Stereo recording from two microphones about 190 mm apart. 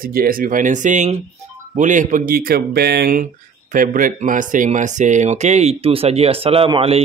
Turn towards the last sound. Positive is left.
turn(degrees=-30)  # may be behind; listen again after turning